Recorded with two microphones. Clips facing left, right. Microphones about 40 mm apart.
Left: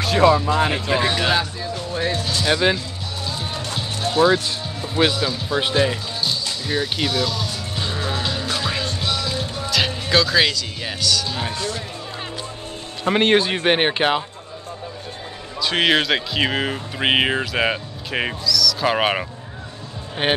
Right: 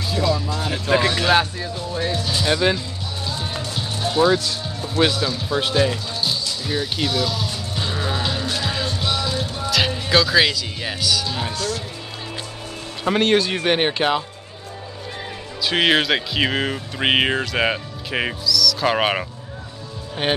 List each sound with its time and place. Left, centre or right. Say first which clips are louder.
0.2 s speech: left 8 dB; left
1.0 s speech: even; centre
2.4 s speech: left 1 dB; centre
3.3 s music: right 1 dB; centre
4.0 s speech: left 1 dB; centre
6.7 s music: left 1 dB; centre
9.6 s speech: right 1 dB; centre
11.5 s speech: right 1 dB; centre
13.1 s speech: left 1 dB; left
15.6 s speech: even; centre
20.2 s speech: left 1 dB; left